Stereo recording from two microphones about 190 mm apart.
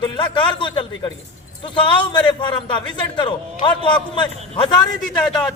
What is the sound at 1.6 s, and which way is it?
A man's voice, 25° left (ahead or behind).